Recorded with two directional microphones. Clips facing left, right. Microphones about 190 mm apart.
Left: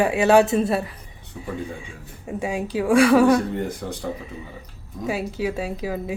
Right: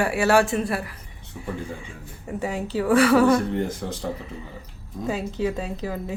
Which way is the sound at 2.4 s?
10° left (ahead or behind).